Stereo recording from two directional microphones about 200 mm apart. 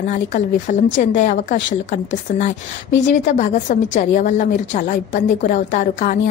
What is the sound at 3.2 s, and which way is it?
A woman's voice, 40° left (ahead or behind).